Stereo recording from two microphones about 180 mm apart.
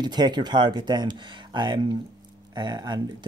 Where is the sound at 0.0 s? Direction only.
25° right (ahead or behind).